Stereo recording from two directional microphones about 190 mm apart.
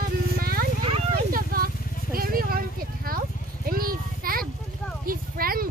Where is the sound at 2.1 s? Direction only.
50° right (ahead or behind).